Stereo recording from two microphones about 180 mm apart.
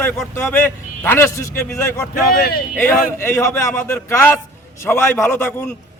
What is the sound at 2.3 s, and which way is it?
Speech, 55° left (ahead or behind).